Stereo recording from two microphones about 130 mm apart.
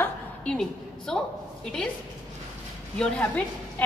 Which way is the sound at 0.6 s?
5° left (ahead or behind).